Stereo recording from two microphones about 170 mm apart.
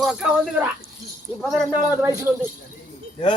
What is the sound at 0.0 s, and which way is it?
Speech, 5° right (ahead or behind).